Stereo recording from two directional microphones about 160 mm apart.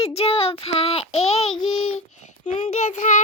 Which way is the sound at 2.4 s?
45° left (ahead or behind).